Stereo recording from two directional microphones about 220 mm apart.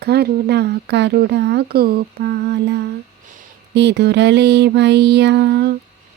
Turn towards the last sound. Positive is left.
turn(degrees=-50)  # may be behind; listen again after turning